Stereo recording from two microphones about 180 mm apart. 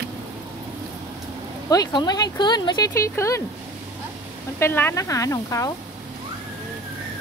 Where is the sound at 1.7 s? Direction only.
20° left (ahead or behind).